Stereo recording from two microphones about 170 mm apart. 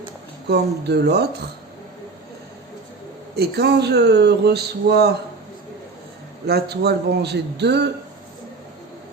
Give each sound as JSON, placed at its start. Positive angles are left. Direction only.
{"t": 0.4, "sound": "speech", "side_deg": -80}
{"t": 3.3, "sound": "speech", "side_deg": -70}
{"t": 6.5, "sound": "speech", "side_deg": -75}